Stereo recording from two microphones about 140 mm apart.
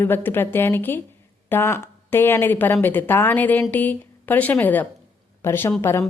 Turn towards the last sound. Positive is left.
turn(degrees=15)  # may be behind; listen again after turning